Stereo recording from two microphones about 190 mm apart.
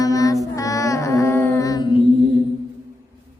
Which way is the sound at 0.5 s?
15° left (ahead or behind).